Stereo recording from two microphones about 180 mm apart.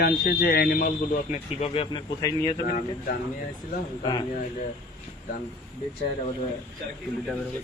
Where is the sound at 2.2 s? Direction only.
20° left (ahead or behind).